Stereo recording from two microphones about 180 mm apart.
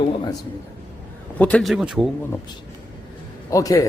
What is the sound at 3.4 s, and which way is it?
Speech, 20° left (ahead or behind).